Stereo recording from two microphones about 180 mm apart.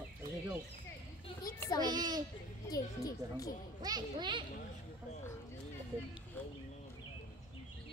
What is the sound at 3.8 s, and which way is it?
Speech, 25° right (ahead or behind).